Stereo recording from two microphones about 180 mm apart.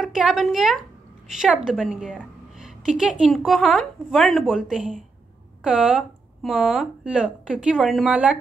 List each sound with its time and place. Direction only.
0.0 s a woman's voice: centre (ahead or behind)